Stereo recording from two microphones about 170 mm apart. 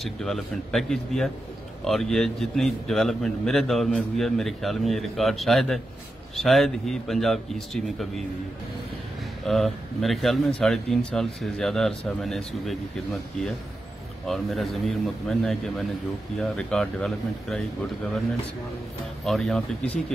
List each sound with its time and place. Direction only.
0.0 s speech: 5° left (ahead or behind)
9.5 s speech: centre (ahead or behind)
19.2 s speech: centre (ahead or behind)